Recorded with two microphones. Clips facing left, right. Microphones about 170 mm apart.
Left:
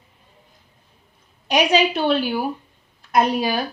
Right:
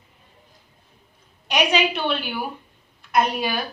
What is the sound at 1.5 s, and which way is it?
A woman's voice, 35° left (ahead or behind).